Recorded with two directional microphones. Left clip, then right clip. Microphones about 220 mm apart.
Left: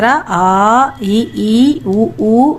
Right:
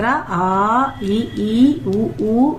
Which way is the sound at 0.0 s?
50° left (ahead or behind).